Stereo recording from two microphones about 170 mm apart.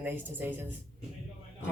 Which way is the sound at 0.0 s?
10° right (ahead or behind).